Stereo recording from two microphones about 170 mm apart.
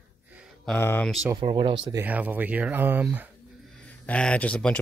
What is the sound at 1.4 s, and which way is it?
Speech, 30° right (ahead or behind).